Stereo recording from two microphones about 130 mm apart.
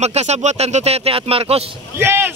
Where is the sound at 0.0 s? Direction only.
55° right (ahead or behind).